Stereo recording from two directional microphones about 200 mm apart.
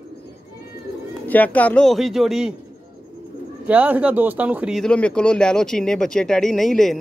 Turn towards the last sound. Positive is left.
turn(degrees=0)  # may be behind; listen again after turning